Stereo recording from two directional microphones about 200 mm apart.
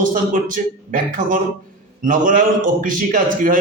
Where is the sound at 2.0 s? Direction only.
40° right (ahead or behind).